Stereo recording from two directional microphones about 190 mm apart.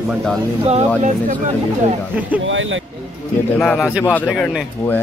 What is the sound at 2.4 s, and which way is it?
Speech, 90° right.